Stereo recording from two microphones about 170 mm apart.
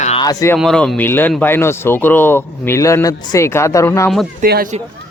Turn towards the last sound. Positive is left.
turn(degrees=-60)  # may be behind; listen again after turning